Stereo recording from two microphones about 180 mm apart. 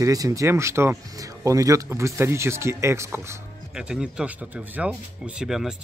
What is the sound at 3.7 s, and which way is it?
Speech, 5° right (ahead or behind).